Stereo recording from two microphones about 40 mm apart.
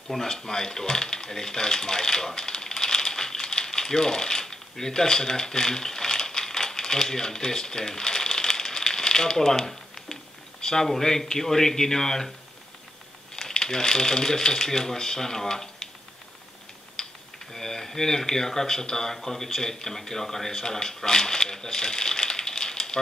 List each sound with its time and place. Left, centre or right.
0.1 s a sound: centre
10.6 s speech: centre
13.4 s speech: centre
17.0 s typing: centre
17.5 s speech: centre